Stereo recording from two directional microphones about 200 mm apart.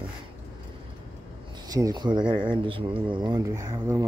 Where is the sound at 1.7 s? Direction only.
20° right (ahead or behind).